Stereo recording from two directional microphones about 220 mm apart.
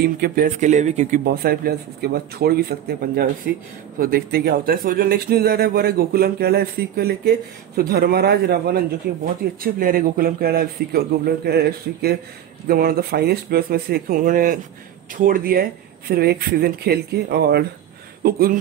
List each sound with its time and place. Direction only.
0.0 s speech: 40° right (ahead or behind)
1.2 s speech: 45° right (ahead or behind)